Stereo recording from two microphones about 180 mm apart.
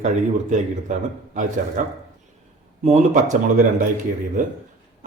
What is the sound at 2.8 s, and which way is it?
Speech, 40° right (ahead or behind).